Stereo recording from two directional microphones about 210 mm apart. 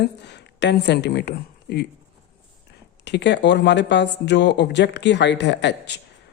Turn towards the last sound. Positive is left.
turn(degrees=55)  # may be behind; listen again after turning